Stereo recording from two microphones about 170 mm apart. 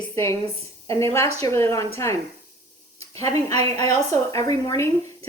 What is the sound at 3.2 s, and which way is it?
Speech, 20° left (ahead or behind).